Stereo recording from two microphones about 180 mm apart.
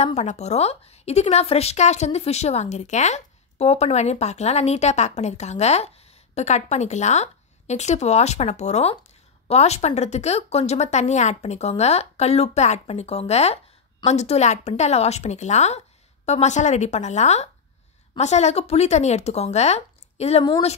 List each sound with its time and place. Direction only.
0.0 s a woman's voice: 40° left (ahead or behind)